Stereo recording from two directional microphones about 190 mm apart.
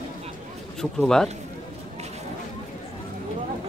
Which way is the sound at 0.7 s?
5° left (ahead or behind).